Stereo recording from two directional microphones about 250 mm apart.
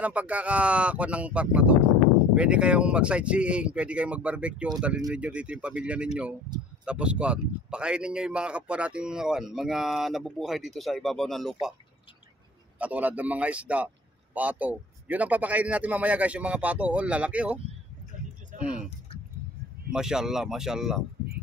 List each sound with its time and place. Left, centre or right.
0.0 s speech: centre
12.7 s speech: centre
18.8 s a sound: left
19.9 s speech: centre